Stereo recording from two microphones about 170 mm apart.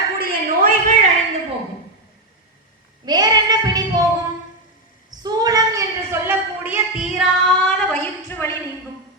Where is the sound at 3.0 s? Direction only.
25° right (ahead or behind).